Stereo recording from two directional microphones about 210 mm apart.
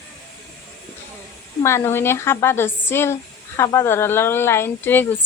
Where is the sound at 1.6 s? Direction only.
10° left (ahead or behind).